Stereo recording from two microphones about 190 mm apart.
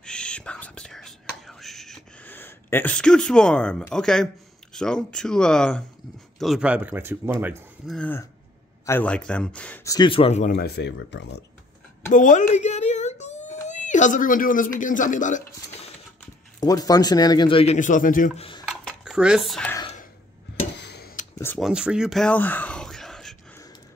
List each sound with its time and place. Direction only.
0.0 s whispering: 5° left (ahead or behind)
4.7 s speech: 5° left (ahead or behind); by 7.5 s 10° right (ahead or behind)
7.8 s speech: centre (ahead or behind)
9.8 s speech: 25° left (ahead or behind)
10.5 s speech: 60° left (ahead or behind)
12.1 s a sound: 40° left (ahead or behind)
16.5 s speech: 20° left (ahead or behind)
17.7 s a man's voice: 40° left (ahead or behind)
18.7 s dishes: centre (ahead or behind)
20.7 s a sound: 60° left (ahead or behind)
21.5 s speech: 5° right (ahead or behind)